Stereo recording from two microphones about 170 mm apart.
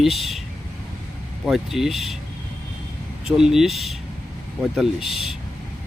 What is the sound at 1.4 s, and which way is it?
Speech, centre (ahead or behind).